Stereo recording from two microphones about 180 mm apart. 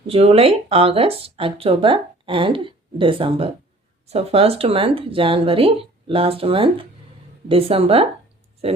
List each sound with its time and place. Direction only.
0.1 s speech: 35° right (ahead or behind)